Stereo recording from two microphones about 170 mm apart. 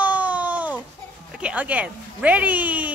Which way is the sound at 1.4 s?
10° right (ahead or behind).